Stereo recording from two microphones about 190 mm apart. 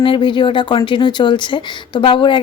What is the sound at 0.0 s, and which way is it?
Speech, 25° left (ahead or behind).